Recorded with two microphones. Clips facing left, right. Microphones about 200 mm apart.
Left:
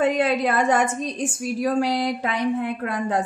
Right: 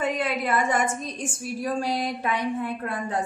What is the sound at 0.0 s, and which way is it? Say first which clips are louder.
A woman's voice: left 6 dB; 70° left (ahead or behind).